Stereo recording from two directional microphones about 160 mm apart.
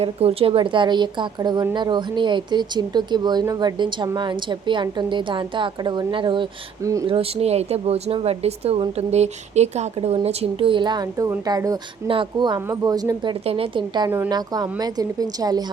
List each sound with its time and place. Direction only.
0.0 s speech: 40° right (ahead or behind)
7.1 s speech: 40° right (ahead or behind); by 13.3 s 25° right (ahead or behind)
13.4 s speech: 35° right (ahead or behind)